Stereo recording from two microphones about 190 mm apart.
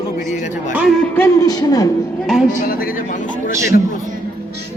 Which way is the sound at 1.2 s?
20° left (ahead or behind).